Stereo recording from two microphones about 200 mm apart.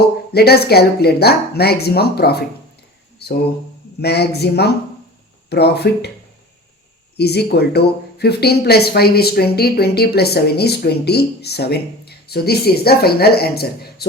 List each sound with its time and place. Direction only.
0.3 s speech: 55° left (ahead or behind)
3.2 s a sound: 55° left (ahead or behind)
4.0 s speech: 55° left (ahead or behind)
7.2 s speech: 55° left (ahead or behind)